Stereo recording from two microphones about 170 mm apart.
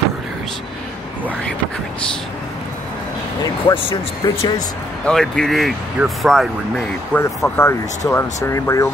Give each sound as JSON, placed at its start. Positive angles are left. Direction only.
{"t": 3.4, "sound": "speech", "side_deg": 25}
{"t": 5.0, "sound": "speech", "side_deg": 5}
{"t": 7.2, "sound": "speech", "side_deg": 15}